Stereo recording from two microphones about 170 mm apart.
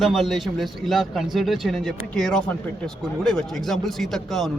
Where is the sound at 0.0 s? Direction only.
Centre (ahead or behind).